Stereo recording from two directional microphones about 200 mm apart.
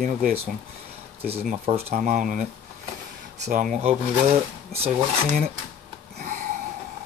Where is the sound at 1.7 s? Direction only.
30° right (ahead or behind).